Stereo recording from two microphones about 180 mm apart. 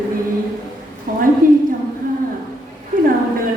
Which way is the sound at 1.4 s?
50° right (ahead or behind).